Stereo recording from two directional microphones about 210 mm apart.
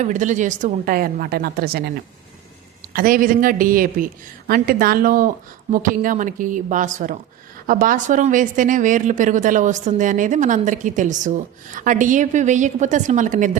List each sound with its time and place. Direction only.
0.0 s a woman's voice: 35° right (ahead or behind)
2.9 s a woman's voice: 40° right (ahead or behind)